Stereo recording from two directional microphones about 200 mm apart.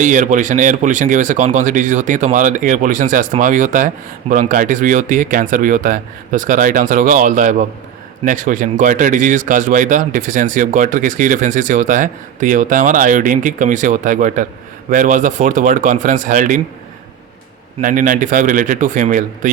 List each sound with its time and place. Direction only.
0.0 s speech: 40° right (ahead or behind)
17.7 s speech: 40° right (ahead or behind)